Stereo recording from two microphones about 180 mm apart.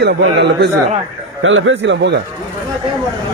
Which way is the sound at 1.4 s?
90° right.